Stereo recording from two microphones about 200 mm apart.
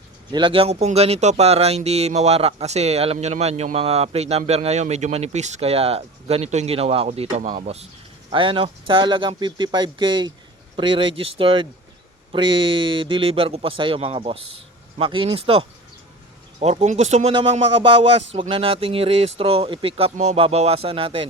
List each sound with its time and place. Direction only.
0.3 s speech: 25° right (ahead or behind)